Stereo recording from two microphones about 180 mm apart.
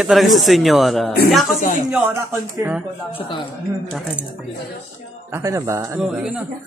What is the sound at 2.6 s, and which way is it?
Speech, 10° right (ahead or behind).